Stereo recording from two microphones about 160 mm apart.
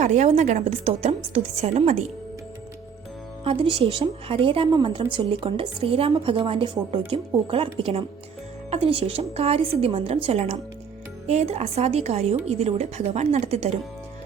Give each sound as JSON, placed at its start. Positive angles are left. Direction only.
{"t": 0.0, "sound": "a woman's voice", "side_deg": -45}
{"t": 3.4, "sound": "a woman's voice", "side_deg": -35}